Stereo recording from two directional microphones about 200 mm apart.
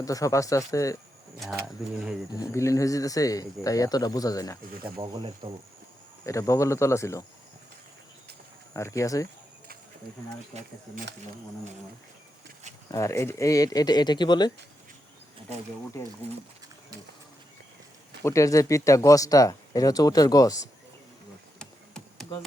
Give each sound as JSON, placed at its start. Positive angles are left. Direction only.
{"t": 0.0, "sound": "speech", "side_deg": 15}
{"t": 2.3, "sound": "speech", "side_deg": 15}
{"t": 4.9, "sound": "speech", "side_deg": -20}
{"t": 6.2, "sound": "speech", "side_deg": 15}
{"t": 8.7, "sound": "speech", "side_deg": 15}
{"t": 10.5, "sound": "speech", "side_deg": -35}
{"t": 12.9, "sound": "speech", "side_deg": 15}
{"t": 16.2, "sound": "speech", "side_deg": -35}
{"t": 18.2, "sound": "speech", "side_deg": 15}
{"t": 21.6, "sound": "a sound", "side_deg": 0}